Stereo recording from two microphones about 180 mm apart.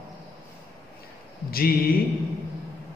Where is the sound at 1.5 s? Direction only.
55° left (ahead or behind).